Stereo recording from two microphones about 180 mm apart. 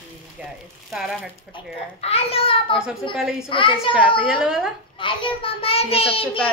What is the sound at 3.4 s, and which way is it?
Speech, 30° left (ahead or behind).